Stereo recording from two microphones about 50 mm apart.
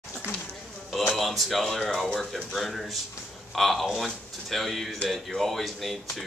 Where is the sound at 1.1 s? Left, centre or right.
Centre.